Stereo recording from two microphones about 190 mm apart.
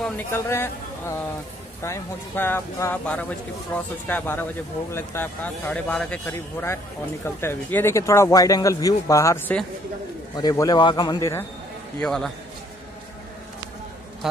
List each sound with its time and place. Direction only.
0.0 s a man's voice: 10° left (ahead or behind)
12.0 s a man's voice: 5° left (ahead or behind)
14.2 s a man's voice: centre (ahead or behind)